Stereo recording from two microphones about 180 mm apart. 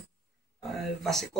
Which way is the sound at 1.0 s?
Centre (ahead or behind).